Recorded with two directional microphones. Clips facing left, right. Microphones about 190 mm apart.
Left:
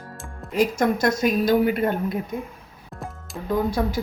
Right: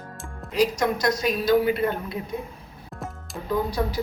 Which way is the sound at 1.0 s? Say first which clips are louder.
Left 3 dB; 50° left (ahead or behind).